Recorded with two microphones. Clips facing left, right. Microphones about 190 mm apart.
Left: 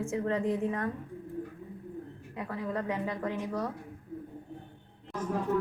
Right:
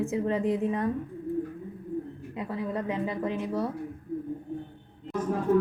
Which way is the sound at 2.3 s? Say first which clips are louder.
Right 3 dB; 20° right (ahead or behind).